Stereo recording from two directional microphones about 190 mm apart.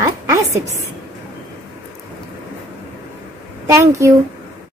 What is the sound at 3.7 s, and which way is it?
Speech, 15° right (ahead or behind).